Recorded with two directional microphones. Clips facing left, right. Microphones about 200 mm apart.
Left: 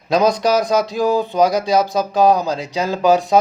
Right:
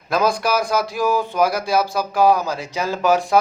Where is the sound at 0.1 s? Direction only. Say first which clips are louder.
Left 4 dB; 20° left (ahead or behind).